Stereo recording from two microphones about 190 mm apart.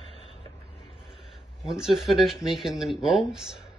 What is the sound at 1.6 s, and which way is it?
Speech, centre (ahead or behind).